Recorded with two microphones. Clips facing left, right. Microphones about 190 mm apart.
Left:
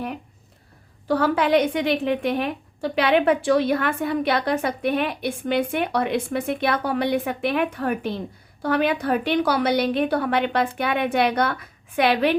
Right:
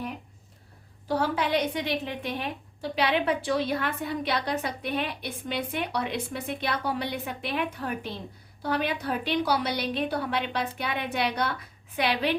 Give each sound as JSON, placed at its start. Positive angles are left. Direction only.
{"t": 1.0, "sound": "speech", "side_deg": 65}